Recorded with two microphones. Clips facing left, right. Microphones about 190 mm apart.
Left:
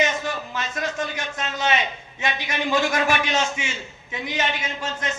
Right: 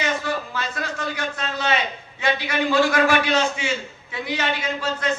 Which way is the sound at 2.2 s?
20° left (ahead or behind).